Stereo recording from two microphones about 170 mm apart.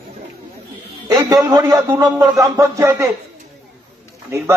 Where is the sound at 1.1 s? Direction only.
20° right (ahead or behind).